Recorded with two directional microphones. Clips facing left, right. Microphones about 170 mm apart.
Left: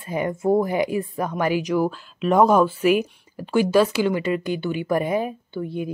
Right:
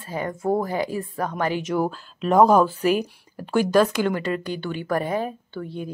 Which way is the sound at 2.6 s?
40° right (ahead or behind).